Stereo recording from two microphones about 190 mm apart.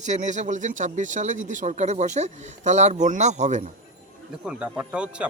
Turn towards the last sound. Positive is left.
turn(degrees=-5)  # may be behind; listen again after turning